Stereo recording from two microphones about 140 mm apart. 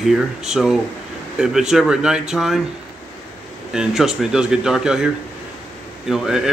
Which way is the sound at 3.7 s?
5° right (ahead or behind).